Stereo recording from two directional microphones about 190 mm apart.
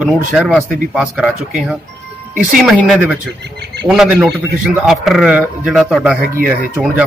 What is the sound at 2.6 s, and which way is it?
A man's voice, centre (ahead or behind).